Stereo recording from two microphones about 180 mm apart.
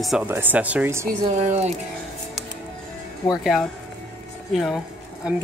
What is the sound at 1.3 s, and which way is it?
Speech, 40° right (ahead or behind).